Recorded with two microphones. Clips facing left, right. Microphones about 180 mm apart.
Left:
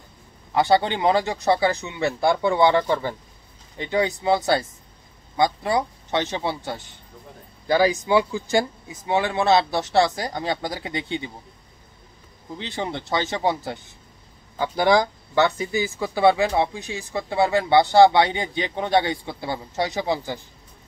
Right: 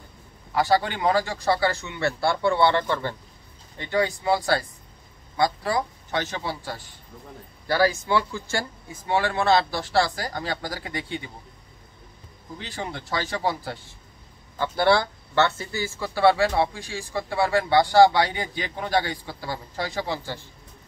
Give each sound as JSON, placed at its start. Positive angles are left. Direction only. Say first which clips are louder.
{"t": 0.6, "sound": "speech", "louder": "left 3 dB", "side_deg": 25}
{"t": 12.5, "sound": "speech", "louder": "left 5 dB", "side_deg": 25}